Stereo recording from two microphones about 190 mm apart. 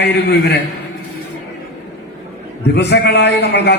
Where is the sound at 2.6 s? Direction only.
60° left (ahead or behind).